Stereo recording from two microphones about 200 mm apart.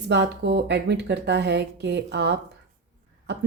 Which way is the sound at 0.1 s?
60° right (ahead or behind).